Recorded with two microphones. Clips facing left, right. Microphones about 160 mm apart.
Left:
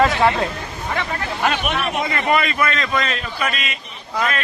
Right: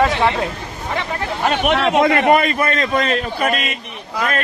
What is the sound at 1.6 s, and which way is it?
Speech, 80° right.